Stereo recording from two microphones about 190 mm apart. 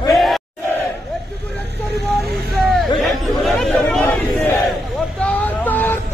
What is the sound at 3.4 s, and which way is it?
Chatter, centre (ahead or behind).